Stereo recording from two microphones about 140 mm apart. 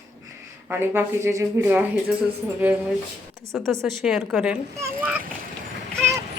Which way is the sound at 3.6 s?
20° right (ahead or behind).